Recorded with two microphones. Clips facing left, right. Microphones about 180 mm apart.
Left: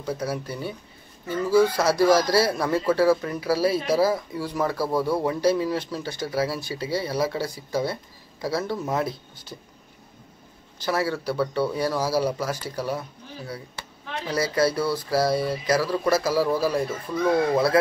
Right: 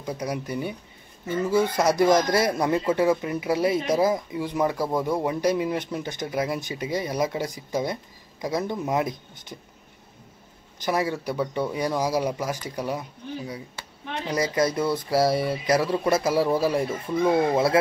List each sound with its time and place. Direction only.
0.0 s speech: 15° right (ahead or behind)
1.8 s speech: 20° right (ahead or behind)
10.8 s speech: 15° right (ahead or behind)
14.2 s speech: 20° right (ahead or behind)